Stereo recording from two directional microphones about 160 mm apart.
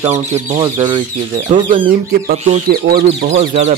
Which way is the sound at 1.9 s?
70° right (ahead or behind).